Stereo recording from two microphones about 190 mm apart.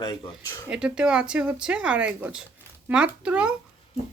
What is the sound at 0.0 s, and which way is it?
Speech, 20° left (ahead or behind).